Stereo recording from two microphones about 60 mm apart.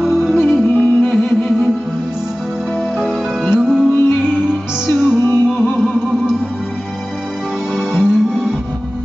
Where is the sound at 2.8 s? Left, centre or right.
Centre.